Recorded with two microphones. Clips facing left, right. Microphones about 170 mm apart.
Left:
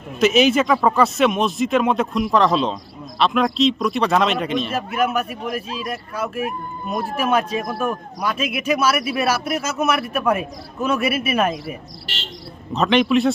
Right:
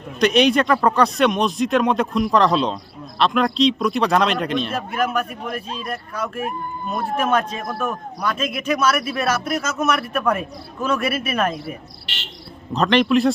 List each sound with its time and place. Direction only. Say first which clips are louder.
0.2 s a man's voice: left 1 dB; 5° left (ahead or behind)
12.7 s speech: even; centre (ahead or behind)